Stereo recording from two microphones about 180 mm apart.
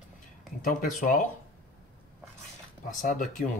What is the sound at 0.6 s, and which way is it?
Speech, 45° left (ahead or behind).